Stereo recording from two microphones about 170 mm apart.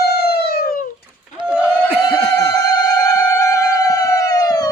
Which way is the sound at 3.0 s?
15° left (ahead or behind).